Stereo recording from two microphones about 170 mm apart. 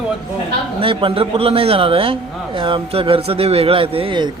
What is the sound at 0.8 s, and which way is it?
A man's voice, 30° right (ahead or behind).